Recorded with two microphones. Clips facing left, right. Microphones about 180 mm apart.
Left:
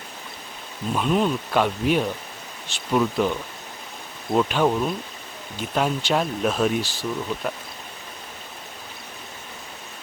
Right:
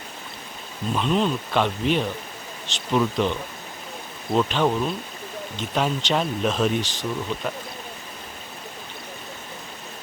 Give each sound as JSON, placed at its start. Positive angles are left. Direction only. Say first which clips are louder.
{"t": 0.9, "sound": "speech", "louder": "left 1 dB", "side_deg": 5}